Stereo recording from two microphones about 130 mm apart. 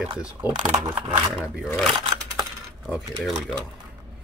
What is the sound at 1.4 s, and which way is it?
Speech, 20° left (ahead or behind).